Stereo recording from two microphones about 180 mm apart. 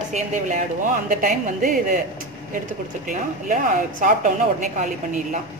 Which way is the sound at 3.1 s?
45° right (ahead or behind).